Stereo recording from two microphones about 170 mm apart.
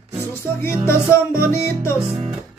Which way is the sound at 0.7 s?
15° left (ahead or behind).